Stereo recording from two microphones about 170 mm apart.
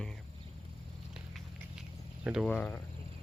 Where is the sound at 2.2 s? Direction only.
Centre (ahead or behind).